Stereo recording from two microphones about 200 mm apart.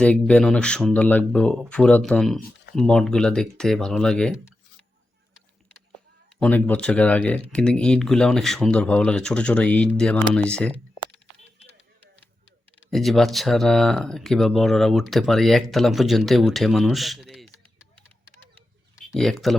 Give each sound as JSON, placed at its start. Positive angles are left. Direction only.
{"t": 0.0, "sound": "speech", "side_deg": 5}
{"t": 6.4, "sound": "speech", "side_deg": 5}
{"t": 12.9, "sound": "speech", "side_deg": 0}
{"t": 18.5, "sound": "a sound", "side_deg": 0}